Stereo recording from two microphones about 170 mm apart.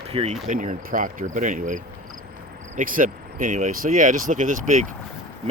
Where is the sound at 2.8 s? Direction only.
50° right (ahead or behind).